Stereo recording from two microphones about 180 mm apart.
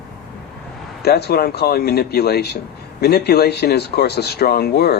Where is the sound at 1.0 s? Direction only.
60° left (ahead or behind).